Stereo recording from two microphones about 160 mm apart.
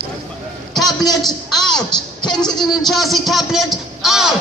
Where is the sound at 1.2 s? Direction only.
5° left (ahead or behind).